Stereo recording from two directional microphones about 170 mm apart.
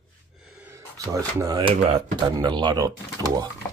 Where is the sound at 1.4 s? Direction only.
25° right (ahead or behind).